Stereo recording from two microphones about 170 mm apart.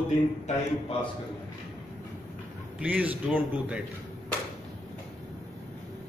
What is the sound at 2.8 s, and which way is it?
A man's voice, 10° right (ahead or behind).